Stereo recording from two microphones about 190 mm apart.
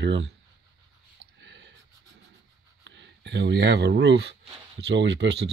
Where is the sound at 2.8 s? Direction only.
70° right (ahead or behind).